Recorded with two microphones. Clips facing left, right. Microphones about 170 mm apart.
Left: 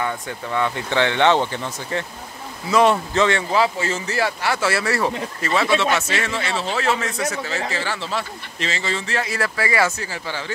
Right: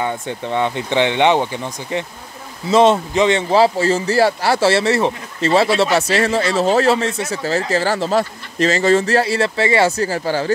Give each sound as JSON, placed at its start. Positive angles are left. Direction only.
{"t": 0.0, "sound": "speech", "side_deg": -25}
{"t": 3.5, "sound": "a man's voice", "side_deg": -35}
{"t": 5.5, "sound": "a man's voice", "side_deg": -35}